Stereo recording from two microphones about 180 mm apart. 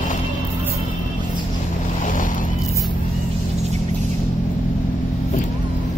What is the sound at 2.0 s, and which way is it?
Boat, 45° left (ahead or behind).